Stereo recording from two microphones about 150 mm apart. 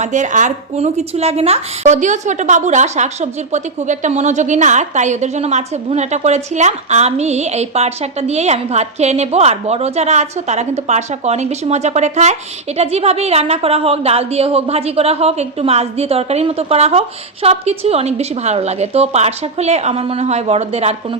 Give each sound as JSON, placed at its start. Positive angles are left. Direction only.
{"t": 0.0, "sound": "a woman's voice", "side_deg": -55}